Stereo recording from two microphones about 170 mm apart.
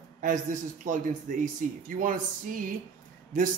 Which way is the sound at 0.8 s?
50° right (ahead or behind).